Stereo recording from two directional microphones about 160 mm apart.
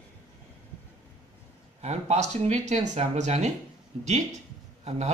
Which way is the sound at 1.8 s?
45° right (ahead or behind).